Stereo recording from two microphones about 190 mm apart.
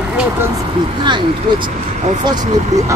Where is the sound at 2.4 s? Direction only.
35° right (ahead or behind).